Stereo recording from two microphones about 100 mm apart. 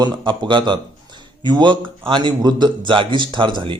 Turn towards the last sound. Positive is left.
turn(degrees=-50)  # may be behind; listen again after turning